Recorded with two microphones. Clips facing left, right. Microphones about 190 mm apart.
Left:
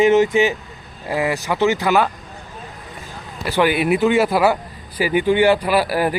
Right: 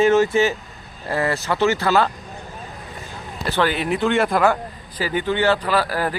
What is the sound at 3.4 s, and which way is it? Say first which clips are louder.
A man's voice: left 4 dB; 10° left (ahead or behind).